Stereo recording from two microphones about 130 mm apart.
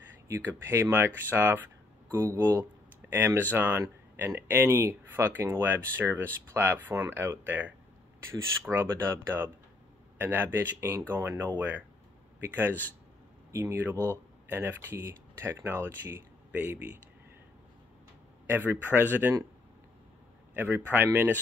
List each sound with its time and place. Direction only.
0.3 s speech: 20° right (ahead or behind)
13.5 s speech: 20° right (ahead or behind)
13.9 s speech: 15° left (ahead or behind)
14.5 s speech: 15° right (ahead or behind)
18.5 s speech: 15° right (ahead or behind)
20.5 s speech: 15° right (ahead or behind)